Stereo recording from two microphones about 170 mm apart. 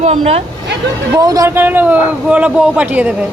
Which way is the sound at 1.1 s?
20° right (ahead or behind).